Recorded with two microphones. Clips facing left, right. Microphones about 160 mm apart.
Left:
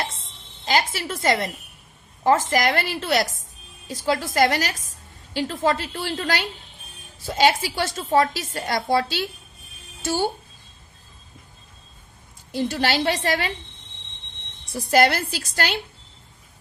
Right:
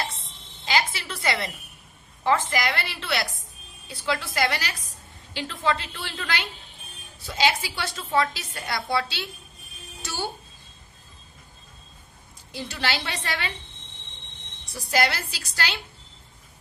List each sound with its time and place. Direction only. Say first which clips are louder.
0.6 s a woman's voice: left 3 dB; 45° left (ahead or behind)
12.5 s a woman's voice: left 7 dB; 45° left (ahead or behind)
14.7 s a woman's voice: left 6 dB; 50° left (ahead or behind)